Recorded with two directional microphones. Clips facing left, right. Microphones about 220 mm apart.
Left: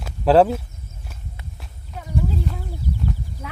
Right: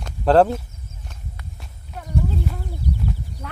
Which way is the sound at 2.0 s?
Centre (ahead or behind).